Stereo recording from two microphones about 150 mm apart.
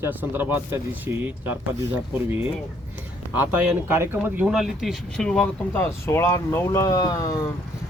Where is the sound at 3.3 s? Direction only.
10° right (ahead or behind); by 5.8 s 5° left (ahead or behind).